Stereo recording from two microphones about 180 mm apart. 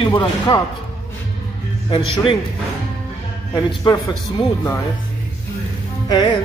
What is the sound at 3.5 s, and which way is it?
Speech, 20° left (ahead or behind).